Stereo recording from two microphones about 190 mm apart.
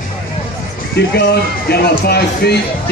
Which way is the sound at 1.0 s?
60° left (ahead or behind).